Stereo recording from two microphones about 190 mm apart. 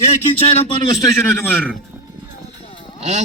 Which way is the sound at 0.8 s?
15° left (ahead or behind).